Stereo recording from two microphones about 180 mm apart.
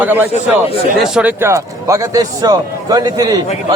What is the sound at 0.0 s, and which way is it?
A man's voice, 10° right (ahead or behind).